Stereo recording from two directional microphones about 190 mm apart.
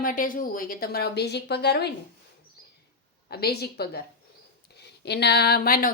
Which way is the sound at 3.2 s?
55° left (ahead or behind).